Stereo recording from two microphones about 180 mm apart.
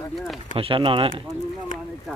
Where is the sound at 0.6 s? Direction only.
30° right (ahead or behind).